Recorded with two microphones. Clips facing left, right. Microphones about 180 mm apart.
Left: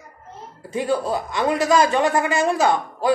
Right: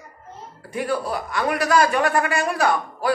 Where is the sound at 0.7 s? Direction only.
25° left (ahead or behind).